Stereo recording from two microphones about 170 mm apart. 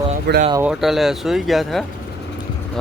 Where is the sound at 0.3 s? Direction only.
75° right (ahead or behind).